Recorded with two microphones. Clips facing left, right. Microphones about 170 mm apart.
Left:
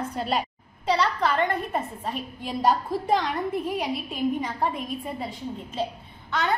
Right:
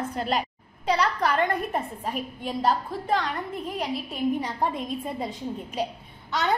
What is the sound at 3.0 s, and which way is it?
Speech, 15° left (ahead or behind).